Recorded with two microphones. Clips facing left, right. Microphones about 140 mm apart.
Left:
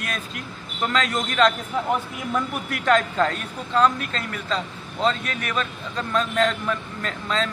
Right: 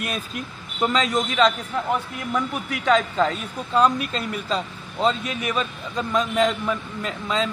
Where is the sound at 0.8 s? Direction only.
5° right (ahead or behind).